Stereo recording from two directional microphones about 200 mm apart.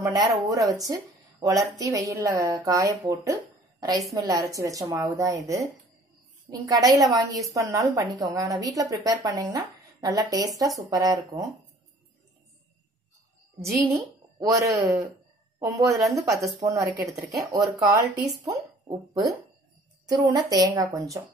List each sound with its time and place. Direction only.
0.0 s speech: 20° right (ahead or behind)
1.8 s speech: 15° right (ahead or behind)
13.6 s speech: 15° right (ahead or behind)